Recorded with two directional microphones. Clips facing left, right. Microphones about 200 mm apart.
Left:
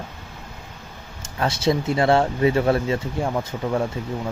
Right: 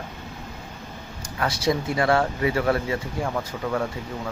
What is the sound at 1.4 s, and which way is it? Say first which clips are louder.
Speech: left 3 dB; 25° left (ahead or behind).